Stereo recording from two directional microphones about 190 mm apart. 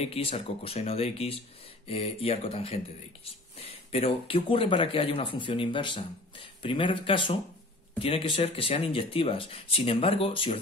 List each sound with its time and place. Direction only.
0.0 s speech: 30° left (ahead or behind)